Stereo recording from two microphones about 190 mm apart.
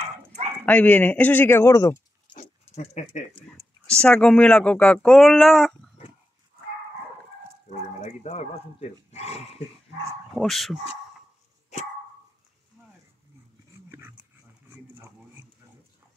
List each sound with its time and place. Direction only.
0.7 s speech: 10° left (ahead or behind)
2.4 s dog: 35° left (ahead or behind)
3.8 s speech: 5° left (ahead or behind)
8.0 s speech: 35° left (ahead or behind)
10.3 s speech: centre (ahead or behind)
13.8 s dog: 15° right (ahead or behind)